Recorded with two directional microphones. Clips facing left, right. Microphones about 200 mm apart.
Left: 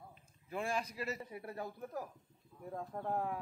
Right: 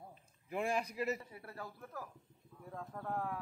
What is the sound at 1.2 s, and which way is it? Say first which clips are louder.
Speech: left 5 dB; 20° left (ahead or behind).